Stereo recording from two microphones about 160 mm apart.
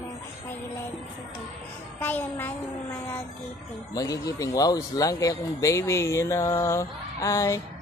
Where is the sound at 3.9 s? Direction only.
20° left (ahead or behind).